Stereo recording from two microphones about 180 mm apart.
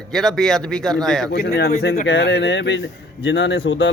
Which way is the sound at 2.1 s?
90° left.